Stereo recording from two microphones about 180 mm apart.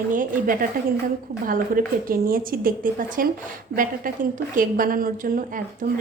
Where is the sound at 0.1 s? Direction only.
50° right (ahead or behind).